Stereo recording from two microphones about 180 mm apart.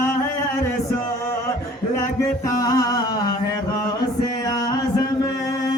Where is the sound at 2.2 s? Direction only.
20° left (ahead or behind).